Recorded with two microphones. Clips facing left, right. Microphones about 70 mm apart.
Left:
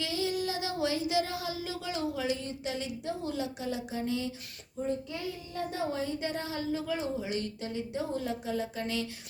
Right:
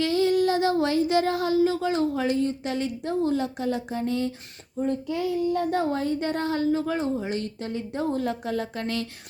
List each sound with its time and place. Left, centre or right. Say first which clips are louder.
0.0 s child singing: right 10 dB; right
4.8 s child singing: right 7 dB; right